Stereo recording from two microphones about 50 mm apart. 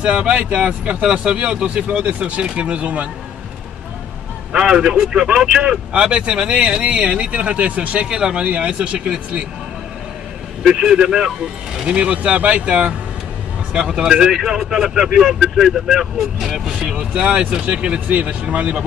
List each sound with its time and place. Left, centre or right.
0.0 s speech: right
1.9 s speech: right
4.5 s speech: centre
5.9 s speech: centre
8.5 s speech: right
10.6 s speech: centre
13.7 s speech: centre
16.9 s speech: centre